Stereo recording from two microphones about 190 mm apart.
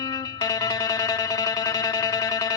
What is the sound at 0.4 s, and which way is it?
Music, 20° left (ahead or behind).